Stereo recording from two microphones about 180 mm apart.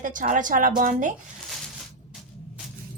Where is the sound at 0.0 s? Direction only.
45° right (ahead or behind).